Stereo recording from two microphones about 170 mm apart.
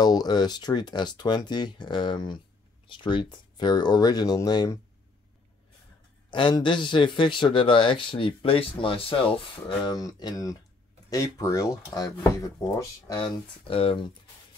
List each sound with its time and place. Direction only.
0.0 s a man's voice: 25° left (ahead or behind)
6.3 s a man's voice: 30° left (ahead or behind)